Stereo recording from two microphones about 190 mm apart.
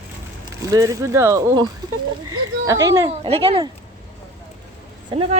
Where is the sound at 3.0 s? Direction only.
30° right (ahead or behind).